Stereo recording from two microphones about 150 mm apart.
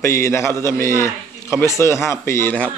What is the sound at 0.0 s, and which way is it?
A man's voice, 20° left (ahead or behind).